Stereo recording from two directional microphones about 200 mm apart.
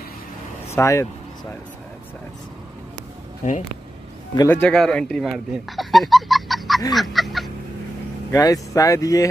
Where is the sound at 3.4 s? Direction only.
35° left (ahead or behind).